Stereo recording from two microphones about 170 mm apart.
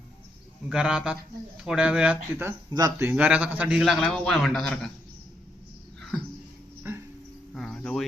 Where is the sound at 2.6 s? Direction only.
20° right (ahead or behind).